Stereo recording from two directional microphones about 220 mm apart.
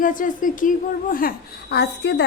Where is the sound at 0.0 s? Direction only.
35° left (ahead or behind).